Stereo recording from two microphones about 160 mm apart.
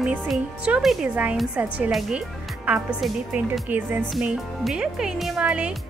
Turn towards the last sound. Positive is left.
turn(degrees=-5)  # may be behind; listen again after turning